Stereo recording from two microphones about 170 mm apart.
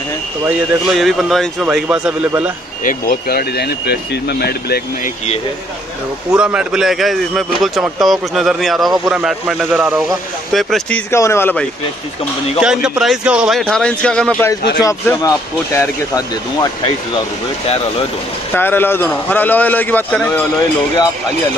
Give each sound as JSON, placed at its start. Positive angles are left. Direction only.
{"t": 0.5, "sound": "a man's voice", "side_deg": -5}
{"t": 2.8, "sound": "speech", "side_deg": 55}
{"t": 6.3, "sound": "a man's voice", "side_deg": -5}
{"t": 11.1, "sound": "a man's voice", "side_deg": 15}
{"t": 12.5, "sound": "a man's voice", "side_deg": -5}
{"t": 14.8, "sound": "speech", "side_deg": 20}
{"t": 18.5, "sound": "a man's voice", "side_deg": 10}